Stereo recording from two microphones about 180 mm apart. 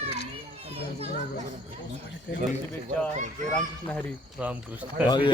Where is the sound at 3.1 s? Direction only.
40° right (ahead or behind).